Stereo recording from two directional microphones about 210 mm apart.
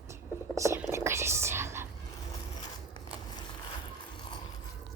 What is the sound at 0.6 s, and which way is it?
Whispering, 15° right (ahead or behind).